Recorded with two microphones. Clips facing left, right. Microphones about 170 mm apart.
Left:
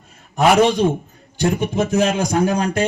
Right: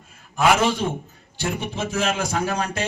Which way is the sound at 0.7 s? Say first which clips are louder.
Left 7 dB; 15° left (ahead or behind).